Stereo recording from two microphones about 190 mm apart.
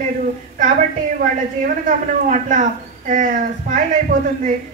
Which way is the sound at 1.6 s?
40° right (ahead or behind).